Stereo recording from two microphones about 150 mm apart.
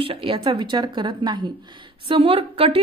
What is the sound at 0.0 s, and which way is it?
A woman's voice, 40° right (ahead or behind).